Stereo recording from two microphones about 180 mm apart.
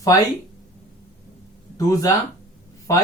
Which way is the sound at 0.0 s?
20° left (ahead or behind).